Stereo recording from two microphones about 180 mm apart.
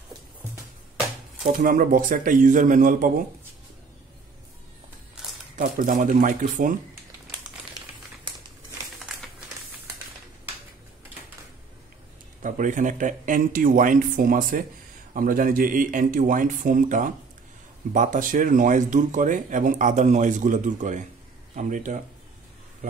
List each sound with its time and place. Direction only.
1.4 s speech: 50° right (ahead or behind)
5.2 s a sound: 5° right (ahead or behind)
5.6 s speech: 45° right (ahead or behind)
12.4 s speech: 45° right (ahead or behind)